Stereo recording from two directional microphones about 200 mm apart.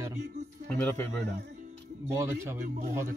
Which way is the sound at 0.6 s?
5° left (ahead or behind).